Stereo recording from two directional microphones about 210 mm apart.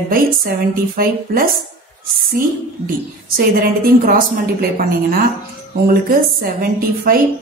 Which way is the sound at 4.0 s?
40° right (ahead or behind).